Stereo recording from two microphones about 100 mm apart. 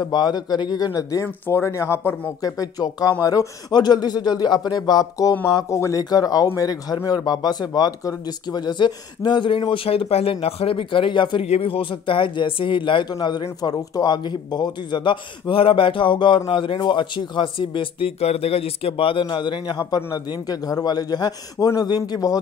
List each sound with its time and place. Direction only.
0.0 s speech: 45° left (ahead or behind)
1.2 s speech: 25° left (ahead or behind); by 11.4 s 55° left (ahead or behind)
11.4 s a man's voice: 80° left; by 22.4 s 40° left (ahead or behind)